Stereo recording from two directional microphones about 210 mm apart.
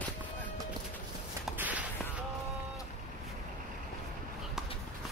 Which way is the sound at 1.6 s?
5° right (ahead or behind).